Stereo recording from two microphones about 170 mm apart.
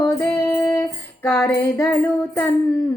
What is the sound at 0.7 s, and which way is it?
Music, 15° left (ahead or behind).